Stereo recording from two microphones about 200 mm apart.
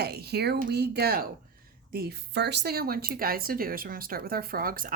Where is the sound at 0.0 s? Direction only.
55° right (ahead or behind).